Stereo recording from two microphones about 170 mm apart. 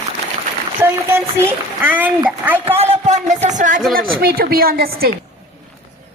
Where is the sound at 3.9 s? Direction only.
60° right (ahead or behind).